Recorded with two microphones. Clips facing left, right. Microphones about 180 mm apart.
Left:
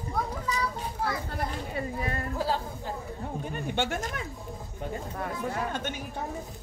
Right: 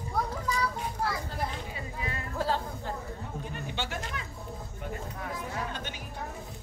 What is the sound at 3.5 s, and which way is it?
Speech, 50° left (ahead or behind).